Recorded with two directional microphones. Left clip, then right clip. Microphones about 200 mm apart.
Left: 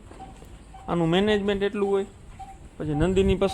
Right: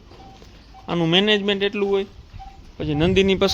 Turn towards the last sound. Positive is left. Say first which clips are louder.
# right 5 dB
turn(degrees=-25)  # may be behind; listen again after turning